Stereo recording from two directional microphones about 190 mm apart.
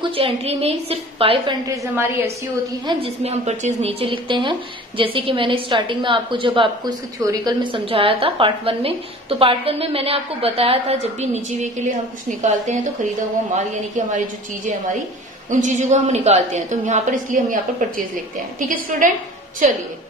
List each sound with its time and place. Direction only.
0.0 s a woman's voice: 30° right (ahead or behind)
1.8 s a woman's voice: 10° right (ahead or behind)
2.9 s a woman's voice: 30° right (ahead or behind)
13.9 s a woman's voice: 40° right (ahead or behind)